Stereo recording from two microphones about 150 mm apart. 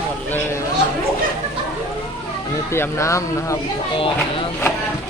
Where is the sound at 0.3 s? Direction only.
15° left (ahead or behind).